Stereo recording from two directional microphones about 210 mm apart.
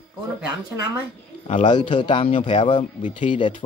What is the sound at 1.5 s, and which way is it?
A man's voice, 20° left (ahead or behind).